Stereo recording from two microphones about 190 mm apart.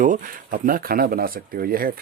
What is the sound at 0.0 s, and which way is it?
Speech, 45° right (ahead or behind).